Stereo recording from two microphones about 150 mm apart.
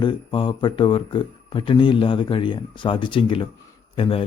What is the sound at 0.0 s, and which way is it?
Speech, 30° left (ahead or behind).